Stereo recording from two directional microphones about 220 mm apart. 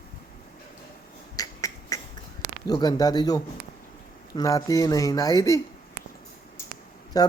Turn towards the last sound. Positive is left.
turn(degrees=15)  # may be behind; listen again after turning